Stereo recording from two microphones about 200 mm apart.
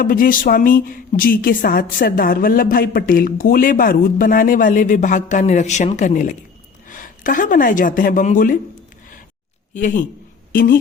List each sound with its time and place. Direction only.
0.0 s a woman's voice: 45° left (ahead or behind)
9.7 s a man's voice: 40° left (ahead or behind)